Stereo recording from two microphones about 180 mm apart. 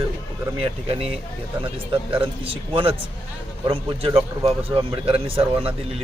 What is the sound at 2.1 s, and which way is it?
Speech, 30° right (ahead or behind).